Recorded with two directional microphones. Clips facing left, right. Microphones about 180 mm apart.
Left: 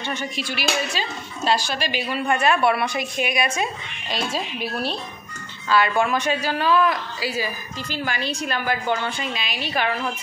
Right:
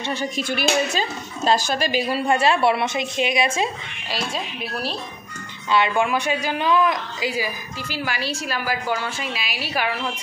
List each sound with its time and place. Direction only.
0.0 s a woman's voice: 35° right (ahead or behind)
0.4 s a woman's voice: 50° right (ahead or behind); by 3.7 s 25° right (ahead or behind)
4.1 s speech: centre (ahead or behind)
5.7 s a woman's voice: 20° right (ahead or behind)